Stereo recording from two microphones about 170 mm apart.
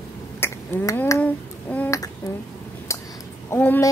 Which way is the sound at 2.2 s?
20° left (ahead or behind).